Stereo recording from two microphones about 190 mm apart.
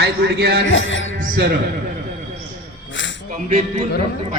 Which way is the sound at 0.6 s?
85° left.